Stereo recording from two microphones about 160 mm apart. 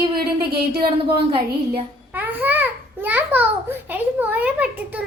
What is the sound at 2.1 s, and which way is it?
Babbling, 10° right (ahead or behind).